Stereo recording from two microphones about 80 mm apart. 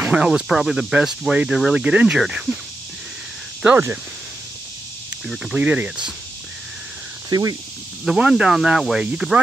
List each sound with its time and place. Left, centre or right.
0.0 s speech: centre
5.2 s speech: centre
7.2 s speech: right
8.0 s speech: centre